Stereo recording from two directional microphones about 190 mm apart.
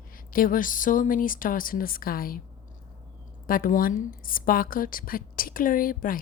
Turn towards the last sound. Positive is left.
turn(degrees=45)  # may be behind; listen again after turning